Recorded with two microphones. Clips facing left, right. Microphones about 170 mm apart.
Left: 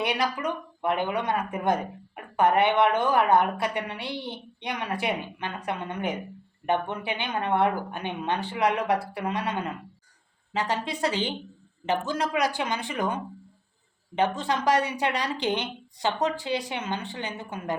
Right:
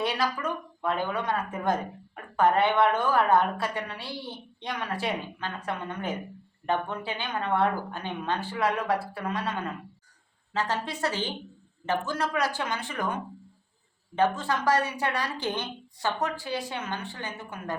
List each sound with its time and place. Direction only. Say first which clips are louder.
0.0 s a woman's voice: left 1 dB; 15° left (ahead or behind)
14.2 s a woman's voice: even; 15° left (ahead or behind)